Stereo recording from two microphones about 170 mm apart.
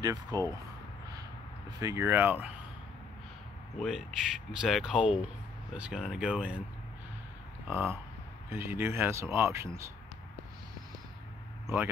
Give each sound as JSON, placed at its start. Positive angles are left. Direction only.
{"t": 0.0, "sound": "speech", "side_deg": -20}
{"t": 1.8, "sound": "speech", "side_deg": -20}
{"t": 3.8, "sound": "speech", "side_deg": 0}
{"t": 7.7, "sound": "speech", "side_deg": -15}